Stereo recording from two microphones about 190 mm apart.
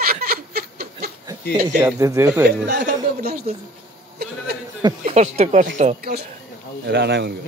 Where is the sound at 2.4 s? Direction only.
55° right (ahead or behind).